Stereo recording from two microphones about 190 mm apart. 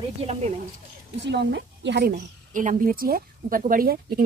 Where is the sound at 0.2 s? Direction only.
35° right (ahead or behind).